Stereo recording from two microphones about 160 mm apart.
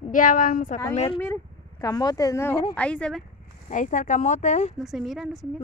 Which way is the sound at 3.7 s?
55° left (ahead or behind).